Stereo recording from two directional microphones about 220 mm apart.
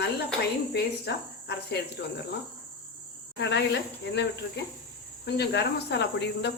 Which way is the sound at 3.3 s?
50° left (ahead or behind).